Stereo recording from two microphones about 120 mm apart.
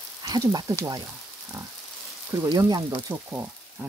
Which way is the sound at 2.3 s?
25° right (ahead or behind).